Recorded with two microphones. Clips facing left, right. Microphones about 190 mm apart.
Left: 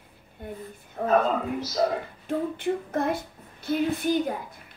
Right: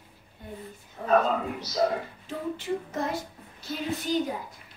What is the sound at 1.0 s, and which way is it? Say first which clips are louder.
Speech: left 5 dB; 55° left (ahead or behind).